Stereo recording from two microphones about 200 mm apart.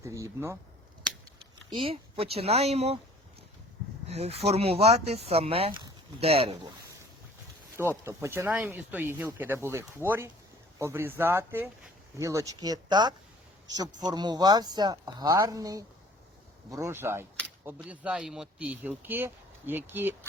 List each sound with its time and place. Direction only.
0.0 s speech: 15° right (ahead or behind)
1.4 s speech: 25° right (ahead or behind)
4.1 s speech: 30° right (ahead or behind)
7.8 s speech: 15° right (ahead or behind)